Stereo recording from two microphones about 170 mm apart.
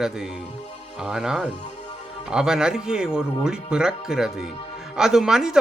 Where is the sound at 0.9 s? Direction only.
5° right (ahead or behind).